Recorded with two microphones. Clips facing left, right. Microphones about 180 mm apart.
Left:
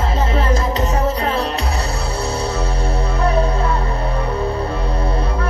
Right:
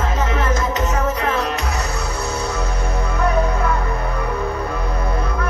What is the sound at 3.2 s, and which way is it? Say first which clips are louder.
Music: left 1 dB; 30° left (ahead or behind).